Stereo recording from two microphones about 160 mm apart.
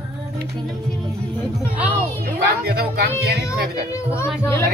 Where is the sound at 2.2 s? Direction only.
80° right.